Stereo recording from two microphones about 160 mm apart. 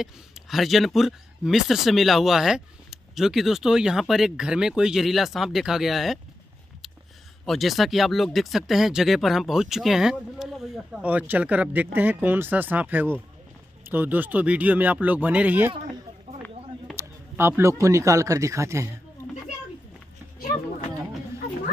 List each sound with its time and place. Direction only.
0.0 s speech: centre (ahead or behind)
7.4 s speech: centre (ahead or behind)
16.9 s speech: 15° right (ahead or behind)